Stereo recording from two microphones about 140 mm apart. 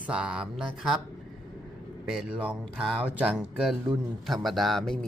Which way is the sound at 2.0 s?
5° right (ahead or behind).